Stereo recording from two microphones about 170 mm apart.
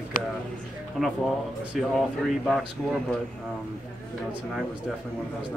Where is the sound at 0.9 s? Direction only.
Centre (ahead or behind).